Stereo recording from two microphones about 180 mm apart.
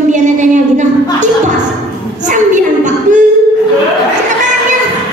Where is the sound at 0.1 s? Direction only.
40° right (ahead or behind).